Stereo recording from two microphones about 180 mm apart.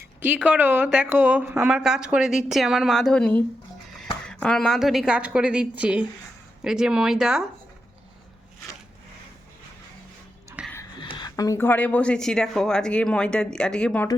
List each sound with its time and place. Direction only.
0.2 s a woman's voice: 10° right (ahead or behind)
10.6 s a sound: 5° right (ahead or behind)
11.0 s speech: 25° left (ahead or behind); by 14.1 s 5° left (ahead or behind)